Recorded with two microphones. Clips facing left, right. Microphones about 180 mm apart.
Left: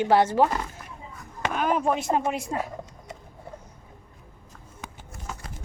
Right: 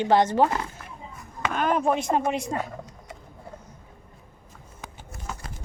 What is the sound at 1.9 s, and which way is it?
Speech, 5° left (ahead or behind).